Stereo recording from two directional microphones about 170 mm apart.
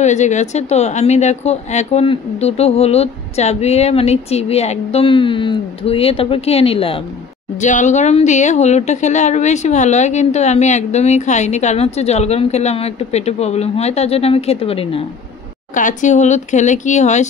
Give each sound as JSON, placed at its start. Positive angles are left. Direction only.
{"t": 0.0, "sound": "a woman's voice", "side_deg": 45}
{"t": 7.6, "sound": "a woman's voice", "side_deg": 45}
{"t": 15.7, "sound": "speech", "side_deg": 50}